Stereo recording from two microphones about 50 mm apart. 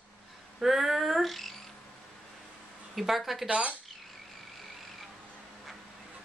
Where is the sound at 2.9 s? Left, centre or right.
Centre.